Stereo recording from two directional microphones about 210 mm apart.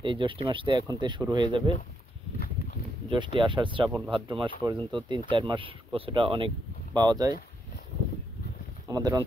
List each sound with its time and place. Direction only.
0.0 s speech: 25° right (ahead or behind)
3.1 s speech: 25° right (ahead or behind)
8.8 s speech: 15° right (ahead or behind)